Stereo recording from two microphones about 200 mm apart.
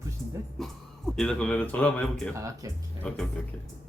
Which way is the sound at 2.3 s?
15° right (ahead or behind).